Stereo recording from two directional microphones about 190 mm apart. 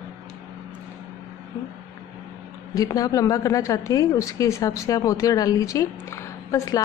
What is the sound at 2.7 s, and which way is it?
Speech, 20° left (ahead or behind).